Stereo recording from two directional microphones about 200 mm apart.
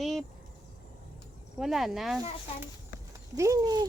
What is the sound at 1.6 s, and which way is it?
Speech, centre (ahead or behind).